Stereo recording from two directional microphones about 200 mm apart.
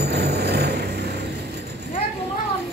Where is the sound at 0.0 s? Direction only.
55° right (ahead or behind).